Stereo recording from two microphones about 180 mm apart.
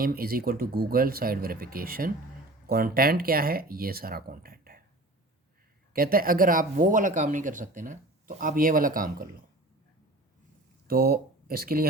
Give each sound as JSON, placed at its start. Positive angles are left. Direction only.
{"t": 0.0, "sound": "speech", "side_deg": -55}
{"t": 5.9, "sound": "speech", "side_deg": -55}
{"t": 10.8, "sound": "speech", "side_deg": -55}